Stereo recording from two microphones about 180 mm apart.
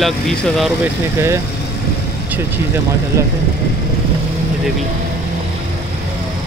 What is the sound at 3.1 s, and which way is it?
Speech, 15° right (ahead or behind).